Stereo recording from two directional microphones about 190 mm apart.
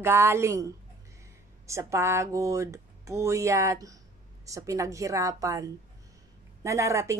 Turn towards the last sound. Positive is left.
turn(degrees=-15)  # may be behind; listen again after turning